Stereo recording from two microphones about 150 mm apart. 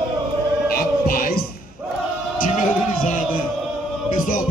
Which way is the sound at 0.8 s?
70° left (ahead or behind).